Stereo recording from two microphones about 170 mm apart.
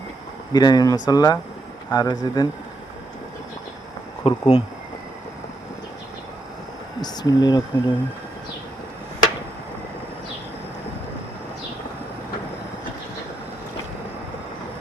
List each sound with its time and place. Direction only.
0.5 s speech: 25° left (ahead or behind)
4.2 s speech: 35° left (ahead or behind)
7.0 s speech: 25° left (ahead or behind)